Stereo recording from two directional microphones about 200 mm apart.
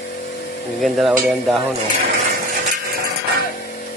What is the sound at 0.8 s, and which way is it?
Speech, centre (ahead or behind).